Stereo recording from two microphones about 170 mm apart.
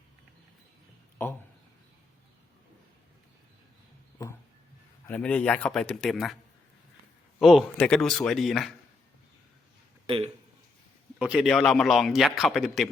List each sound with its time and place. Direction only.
1.2 s a sound: 15° left (ahead or behind)
5.0 s a man's voice: 10° left (ahead or behind)
7.3 s a man's voice: centre (ahead or behind)
10.1 s speech: 30° right (ahead or behind)
11.2 s a man's voice: 5° right (ahead or behind)